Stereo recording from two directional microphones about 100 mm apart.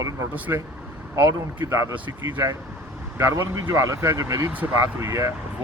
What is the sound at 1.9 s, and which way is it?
Speech, 15° right (ahead or behind).